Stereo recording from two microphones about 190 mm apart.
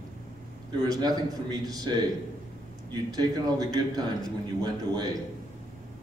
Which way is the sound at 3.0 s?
20° right (ahead or behind).